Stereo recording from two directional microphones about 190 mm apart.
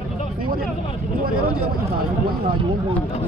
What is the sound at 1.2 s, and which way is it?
Speech, 50° right (ahead or behind).